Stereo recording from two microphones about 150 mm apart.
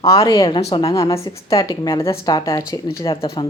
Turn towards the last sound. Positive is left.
turn(degrees=30)  # may be behind; listen again after turning